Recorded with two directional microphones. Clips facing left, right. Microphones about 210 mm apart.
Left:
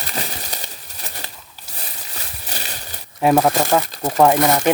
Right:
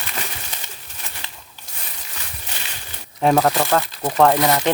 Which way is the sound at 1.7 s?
35° left (ahead or behind).